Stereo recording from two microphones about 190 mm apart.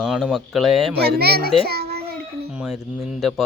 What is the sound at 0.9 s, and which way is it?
A child's voice, 55° right (ahead or behind).